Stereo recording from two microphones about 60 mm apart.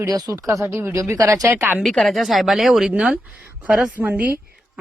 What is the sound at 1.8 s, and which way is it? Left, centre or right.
A woman's voice, centre.